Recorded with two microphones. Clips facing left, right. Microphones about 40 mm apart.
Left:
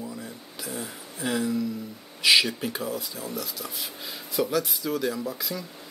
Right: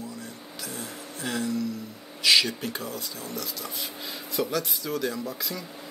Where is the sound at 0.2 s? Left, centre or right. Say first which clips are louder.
Left 1 dB; centre.